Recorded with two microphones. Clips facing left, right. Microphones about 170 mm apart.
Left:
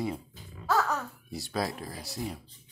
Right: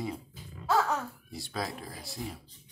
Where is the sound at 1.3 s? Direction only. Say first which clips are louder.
Left 6 dB; centre (ahead or behind).